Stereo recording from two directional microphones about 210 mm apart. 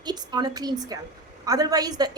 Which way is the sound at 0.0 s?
20° right (ahead or behind).